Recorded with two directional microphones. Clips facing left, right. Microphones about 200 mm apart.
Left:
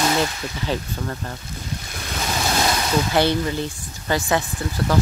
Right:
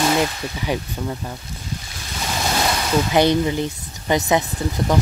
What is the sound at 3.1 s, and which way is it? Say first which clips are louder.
Speech: right 5 dB; 15° right (ahead or behind).